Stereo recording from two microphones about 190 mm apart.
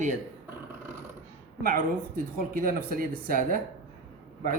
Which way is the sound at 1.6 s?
45° right (ahead or behind).